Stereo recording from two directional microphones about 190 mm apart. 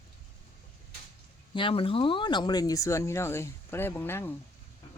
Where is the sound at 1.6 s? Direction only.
25° left (ahead or behind); by 4.3 s 10° left (ahead or behind).